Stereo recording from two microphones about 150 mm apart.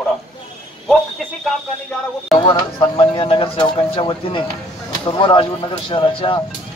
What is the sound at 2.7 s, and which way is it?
A man's voice, 30° left (ahead or behind).